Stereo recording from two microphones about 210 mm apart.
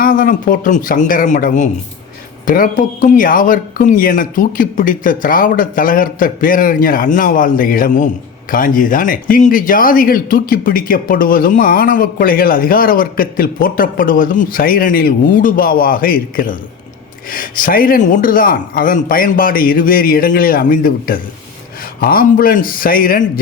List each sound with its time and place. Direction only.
0.0 s speech: 40° left (ahead or behind)